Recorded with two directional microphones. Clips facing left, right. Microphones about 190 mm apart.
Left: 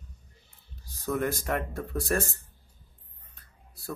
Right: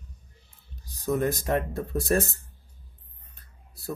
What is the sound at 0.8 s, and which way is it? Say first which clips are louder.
Speech: right 3 dB; 20° right (ahead or behind).